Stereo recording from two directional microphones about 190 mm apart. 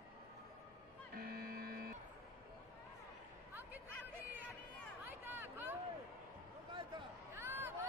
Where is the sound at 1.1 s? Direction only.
50° right (ahead or behind).